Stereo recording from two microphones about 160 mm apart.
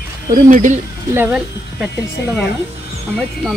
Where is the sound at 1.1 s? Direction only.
15° right (ahead or behind).